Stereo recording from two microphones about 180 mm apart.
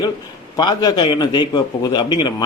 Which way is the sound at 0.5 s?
20° left (ahead or behind).